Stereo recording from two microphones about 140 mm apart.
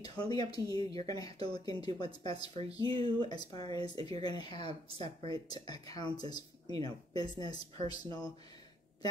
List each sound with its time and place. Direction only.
0.0 s speech: 30° left (ahead or behind)
2.8 s speech: 40° right (ahead or behind)
3.3 s speech: 30° left (ahead or behind)